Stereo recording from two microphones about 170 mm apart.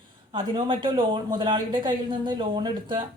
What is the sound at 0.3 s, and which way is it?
A man's voice, 30° right (ahead or behind).